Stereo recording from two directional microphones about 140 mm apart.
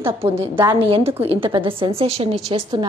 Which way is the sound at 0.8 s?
40° right (ahead or behind).